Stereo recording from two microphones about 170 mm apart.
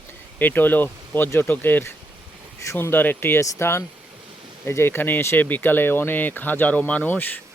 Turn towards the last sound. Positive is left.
turn(degrees=10)  # may be behind; listen again after turning